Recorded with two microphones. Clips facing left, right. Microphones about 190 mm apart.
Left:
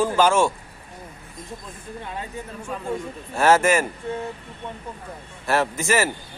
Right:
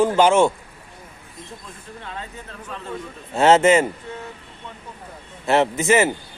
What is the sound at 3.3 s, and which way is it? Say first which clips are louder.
Speech: right 4 dB; 20° right (ahead or behind).